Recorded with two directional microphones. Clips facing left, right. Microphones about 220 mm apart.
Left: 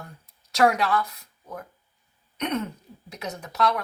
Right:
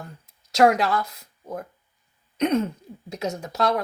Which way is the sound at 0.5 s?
25° right (ahead or behind).